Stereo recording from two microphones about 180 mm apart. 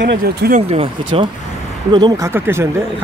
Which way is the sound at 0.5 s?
35° right (ahead or behind).